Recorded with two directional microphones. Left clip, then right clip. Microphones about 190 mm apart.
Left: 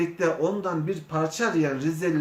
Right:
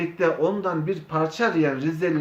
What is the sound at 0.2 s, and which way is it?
Speech, 15° right (ahead or behind).